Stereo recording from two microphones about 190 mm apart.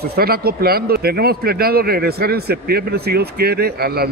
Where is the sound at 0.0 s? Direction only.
55° right (ahead or behind).